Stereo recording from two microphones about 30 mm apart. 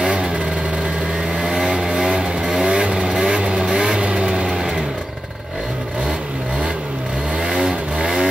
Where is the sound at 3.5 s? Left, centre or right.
Right.